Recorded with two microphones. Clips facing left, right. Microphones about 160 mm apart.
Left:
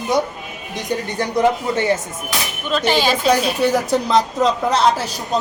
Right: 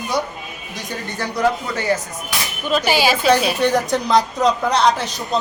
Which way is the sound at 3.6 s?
5° left (ahead or behind).